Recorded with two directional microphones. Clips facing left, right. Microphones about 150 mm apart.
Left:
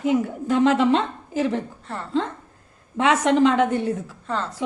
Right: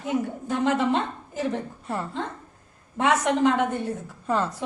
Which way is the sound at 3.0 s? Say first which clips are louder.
Left 4 dB; 90° left.